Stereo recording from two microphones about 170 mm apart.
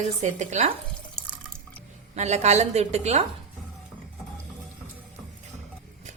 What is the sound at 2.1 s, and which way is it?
Speech, 40° right (ahead or behind).